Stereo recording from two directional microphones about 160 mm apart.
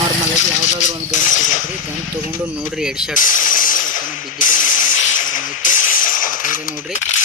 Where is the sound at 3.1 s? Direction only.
55° left (ahead or behind).